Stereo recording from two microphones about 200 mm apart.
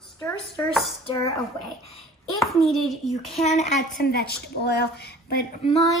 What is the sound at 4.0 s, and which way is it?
A woman's voice, 50° left (ahead or behind).